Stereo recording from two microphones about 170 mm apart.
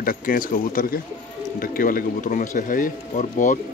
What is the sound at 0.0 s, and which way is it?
Speech, 55° left (ahead or behind).